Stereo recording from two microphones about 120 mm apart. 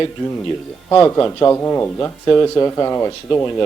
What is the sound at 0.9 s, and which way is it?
A man's voice, 20° left (ahead or behind).